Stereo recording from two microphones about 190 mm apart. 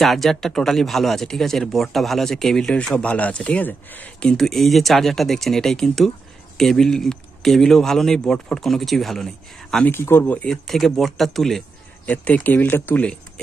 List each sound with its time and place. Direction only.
0.0 s speech: centre (ahead or behind)